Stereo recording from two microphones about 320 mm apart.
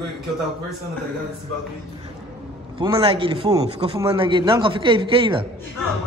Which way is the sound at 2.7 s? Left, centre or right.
Centre.